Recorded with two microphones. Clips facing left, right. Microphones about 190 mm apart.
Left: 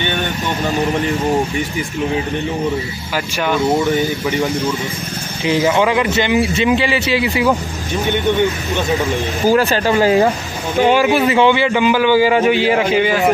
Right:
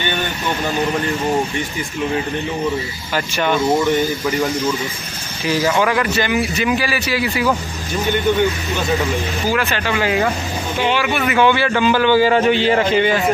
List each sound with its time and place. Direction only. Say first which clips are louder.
3.4 s speech: left 1 dB; centre (ahead or behind)
5.4 s a man's voice: left 3 dB; 20° left (ahead or behind)
9.5 s speech: left 7 dB; 35° left (ahead or behind)
11.2 s a man's voice: left 2 dB; 20° left (ahead or behind); by 13.2 s 5° left (ahead or behind)